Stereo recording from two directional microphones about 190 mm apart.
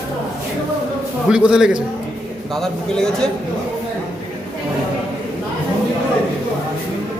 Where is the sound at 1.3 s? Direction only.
5° right (ahead or behind).